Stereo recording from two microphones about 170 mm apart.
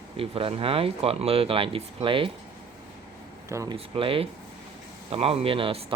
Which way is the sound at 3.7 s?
30° right (ahead or behind).